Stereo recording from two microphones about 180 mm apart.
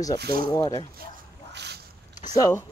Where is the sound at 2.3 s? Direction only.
20° left (ahead or behind).